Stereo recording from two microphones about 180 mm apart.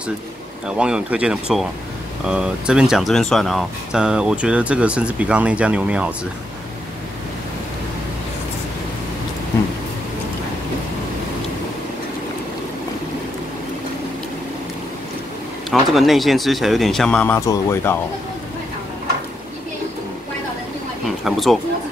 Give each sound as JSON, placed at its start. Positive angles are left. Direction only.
{"t": 0.7, "sound": "speech", "side_deg": -5}
{"t": 15.7, "sound": "speech", "side_deg": 0}
{"t": 21.2, "sound": "speech", "side_deg": 0}